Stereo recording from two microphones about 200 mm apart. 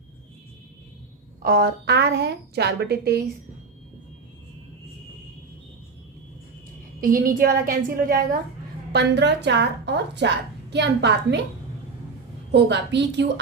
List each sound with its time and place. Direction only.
1.4 s a woman's voice: 50° right (ahead or behind)
7.0 s a woman's voice: 45° right (ahead or behind)
8.9 s a woman's voice: 55° right (ahead or behind)
12.5 s a woman's voice: 60° right (ahead or behind)